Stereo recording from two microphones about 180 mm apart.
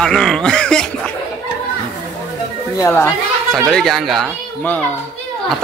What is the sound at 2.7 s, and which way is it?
A child's voice, 15° left (ahead or behind).